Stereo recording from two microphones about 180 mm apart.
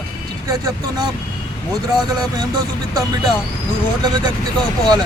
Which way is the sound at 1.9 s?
25° right (ahead or behind).